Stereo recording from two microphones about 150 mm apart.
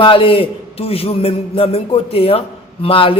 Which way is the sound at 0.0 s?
35° left (ahead or behind).